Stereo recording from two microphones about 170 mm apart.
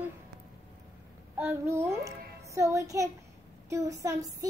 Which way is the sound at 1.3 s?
15° right (ahead or behind).